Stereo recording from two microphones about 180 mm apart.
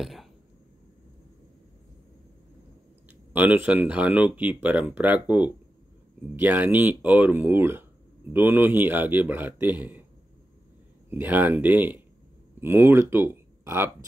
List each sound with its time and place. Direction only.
0.0 s speech: centre (ahead or behind)
3.3 s speech: 10° right (ahead or behind)
6.3 s speech: 10° right (ahead or behind)
11.1 s speech: 10° right (ahead or behind)